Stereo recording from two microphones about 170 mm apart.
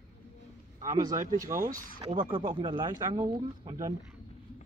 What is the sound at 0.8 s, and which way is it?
A man's voice, 25° right (ahead or behind).